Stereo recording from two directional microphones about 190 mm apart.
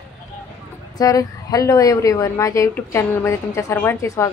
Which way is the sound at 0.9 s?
20° left (ahead or behind).